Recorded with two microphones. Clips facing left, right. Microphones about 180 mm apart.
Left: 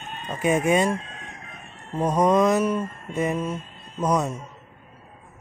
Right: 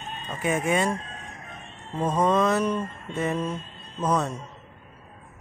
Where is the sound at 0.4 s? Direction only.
20° left (ahead or behind).